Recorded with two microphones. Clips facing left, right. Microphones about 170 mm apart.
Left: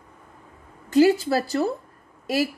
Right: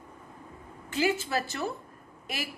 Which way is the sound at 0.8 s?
40° left (ahead or behind).